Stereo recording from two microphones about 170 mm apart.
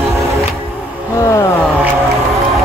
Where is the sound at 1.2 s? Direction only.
20° left (ahead or behind).